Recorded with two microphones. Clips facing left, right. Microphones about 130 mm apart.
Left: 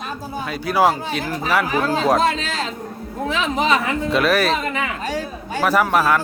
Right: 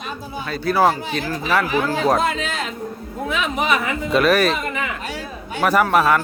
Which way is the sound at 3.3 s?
30° left (ahead or behind).